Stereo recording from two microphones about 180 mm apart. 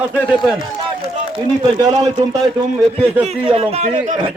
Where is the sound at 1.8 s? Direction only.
20° right (ahead or behind).